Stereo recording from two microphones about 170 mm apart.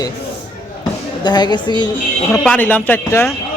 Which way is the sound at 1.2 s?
25° left (ahead or behind).